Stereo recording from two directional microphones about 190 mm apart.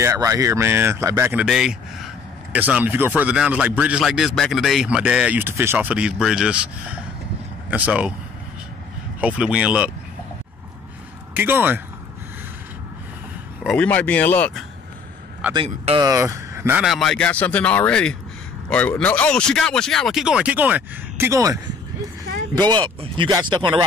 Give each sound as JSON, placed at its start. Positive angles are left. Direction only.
{"t": 0.0, "sound": "speech", "side_deg": -15}
{"t": 9.2, "sound": "speech", "side_deg": -5}
{"t": 11.3, "sound": "speech", "side_deg": -10}
{"t": 13.7, "sound": "speech", "side_deg": 5}
{"t": 15.5, "sound": "speech", "side_deg": -30}
{"t": 16.1, "sound": "speech", "side_deg": -15}
{"t": 22.7, "sound": "speech", "side_deg": -25}